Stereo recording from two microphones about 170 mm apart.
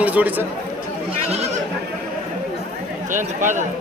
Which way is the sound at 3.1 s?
45° right (ahead or behind).